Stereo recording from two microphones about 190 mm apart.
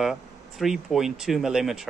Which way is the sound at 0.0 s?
Centre (ahead or behind).